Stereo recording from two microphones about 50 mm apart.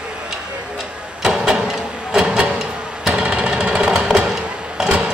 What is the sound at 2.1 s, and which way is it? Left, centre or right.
Printer, centre.